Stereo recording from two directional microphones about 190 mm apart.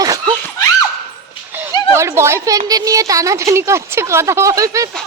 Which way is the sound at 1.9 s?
15° right (ahead or behind).